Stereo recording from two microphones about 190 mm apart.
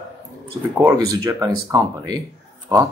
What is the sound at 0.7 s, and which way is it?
Speech, 20° right (ahead or behind).